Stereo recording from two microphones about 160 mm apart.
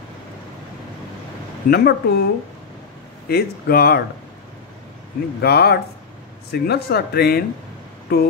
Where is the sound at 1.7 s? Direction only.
80° left.